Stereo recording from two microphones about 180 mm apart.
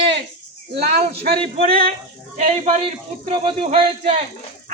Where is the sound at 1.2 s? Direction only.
55° right (ahead or behind).